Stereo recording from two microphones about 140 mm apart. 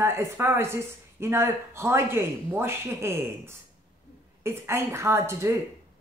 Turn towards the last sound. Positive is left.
turn(degrees=-20)  # may be behind; listen again after turning